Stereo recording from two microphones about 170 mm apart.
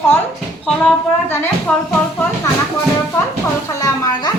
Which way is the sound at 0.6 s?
10° left (ahead or behind).